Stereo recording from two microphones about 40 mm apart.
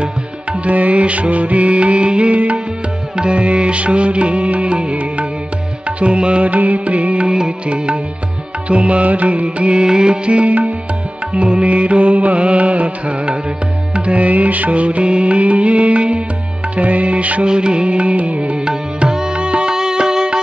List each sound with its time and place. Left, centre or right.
0.0 s music: right
6.5 s music: right
7.2 s music: centre; by 17.5 s right
17.5 s music: right
18.7 s music: centre